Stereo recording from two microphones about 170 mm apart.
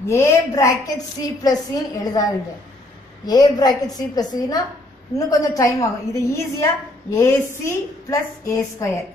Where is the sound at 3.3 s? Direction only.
25° left (ahead or behind).